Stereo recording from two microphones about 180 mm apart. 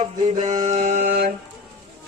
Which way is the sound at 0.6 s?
40° right (ahead or behind).